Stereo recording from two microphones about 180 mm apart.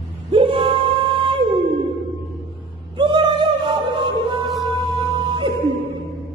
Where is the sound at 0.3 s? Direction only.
30° right (ahead or behind).